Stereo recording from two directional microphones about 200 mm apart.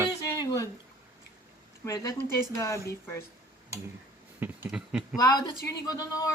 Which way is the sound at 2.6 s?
15° left (ahead or behind).